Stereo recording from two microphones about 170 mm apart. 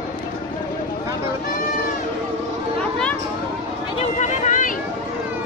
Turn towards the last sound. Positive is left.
turn(degrees=50)  # may be behind; listen again after turning